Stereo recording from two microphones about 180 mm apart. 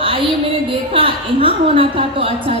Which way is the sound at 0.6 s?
30° right (ahead or behind).